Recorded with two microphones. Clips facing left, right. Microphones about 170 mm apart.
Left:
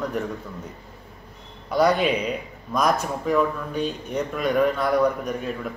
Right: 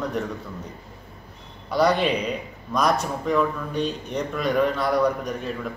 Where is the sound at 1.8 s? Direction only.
5° left (ahead or behind).